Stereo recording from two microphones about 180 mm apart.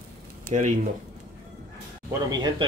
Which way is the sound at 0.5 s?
45° right (ahead or behind).